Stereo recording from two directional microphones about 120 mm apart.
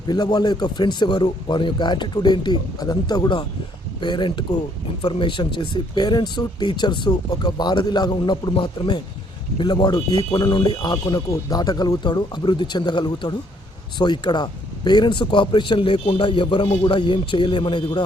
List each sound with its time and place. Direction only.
0.1 s speech: 35° left (ahead or behind)